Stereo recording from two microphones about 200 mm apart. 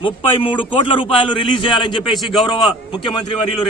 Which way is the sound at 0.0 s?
25° left (ahead or behind).